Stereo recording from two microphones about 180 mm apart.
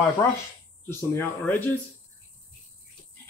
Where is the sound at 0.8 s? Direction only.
15° left (ahead or behind).